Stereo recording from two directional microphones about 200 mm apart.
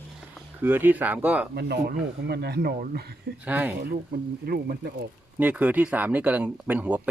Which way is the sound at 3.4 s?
10° right (ahead or behind).